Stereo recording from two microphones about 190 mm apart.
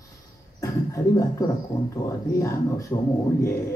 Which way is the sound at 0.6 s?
15° left (ahead or behind).